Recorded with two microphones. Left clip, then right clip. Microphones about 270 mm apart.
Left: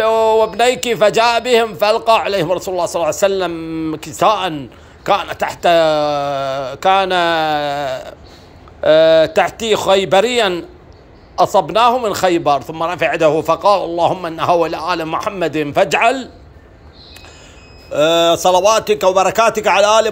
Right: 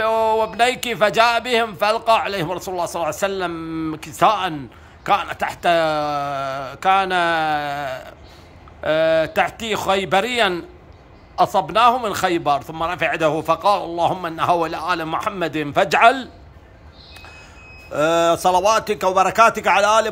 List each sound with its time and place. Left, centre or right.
0.0 s speech: centre
17.9 s speech: centre